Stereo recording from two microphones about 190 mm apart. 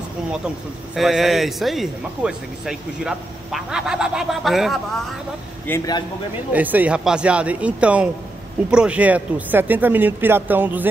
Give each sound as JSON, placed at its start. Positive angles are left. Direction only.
{"t": 0.9, "sound": "speech", "side_deg": 0}
{"t": 5.7, "sound": "a man's voice", "side_deg": 20}
{"t": 6.5, "sound": "speech", "side_deg": -10}